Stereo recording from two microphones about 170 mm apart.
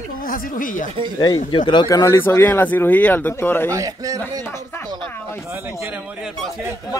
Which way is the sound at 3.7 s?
20° right (ahead or behind).